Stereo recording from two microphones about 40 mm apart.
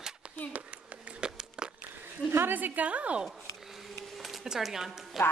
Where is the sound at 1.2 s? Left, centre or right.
Right.